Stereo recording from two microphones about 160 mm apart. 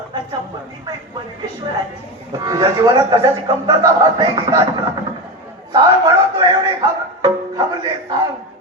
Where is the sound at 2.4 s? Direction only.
20° right (ahead or behind).